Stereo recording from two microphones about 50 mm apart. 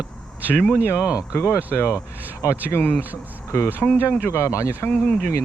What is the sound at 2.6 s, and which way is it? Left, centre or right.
Speech, left.